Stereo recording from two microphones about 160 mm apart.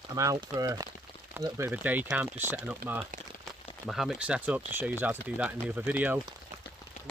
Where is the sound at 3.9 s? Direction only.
Centre (ahead or behind).